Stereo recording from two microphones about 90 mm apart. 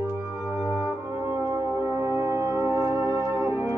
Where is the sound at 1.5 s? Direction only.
35° right (ahead or behind).